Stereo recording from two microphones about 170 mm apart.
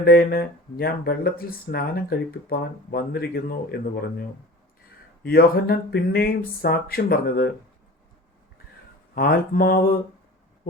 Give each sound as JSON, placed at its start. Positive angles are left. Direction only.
{"t": 0.0, "sound": "speech", "side_deg": 60}
{"t": 9.1, "sound": "speech", "side_deg": 60}